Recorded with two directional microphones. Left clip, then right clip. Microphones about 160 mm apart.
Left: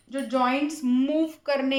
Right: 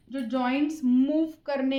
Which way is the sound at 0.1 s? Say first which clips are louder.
Left 4 dB; 15° left (ahead or behind).